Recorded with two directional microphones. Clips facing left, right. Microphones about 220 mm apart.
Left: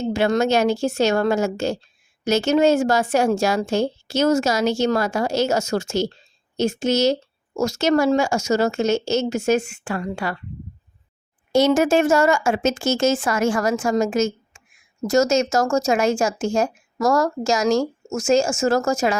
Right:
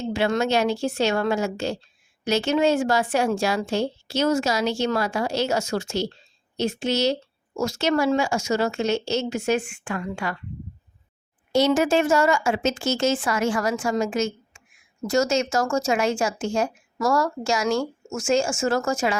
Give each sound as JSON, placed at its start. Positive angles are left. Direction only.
{"t": 0.0, "sound": "speech", "side_deg": 45}
{"t": 11.5, "sound": "speech", "side_deg": 45}